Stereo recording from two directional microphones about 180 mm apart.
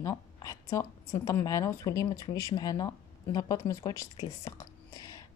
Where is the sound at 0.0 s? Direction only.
20° left (ahead or behind).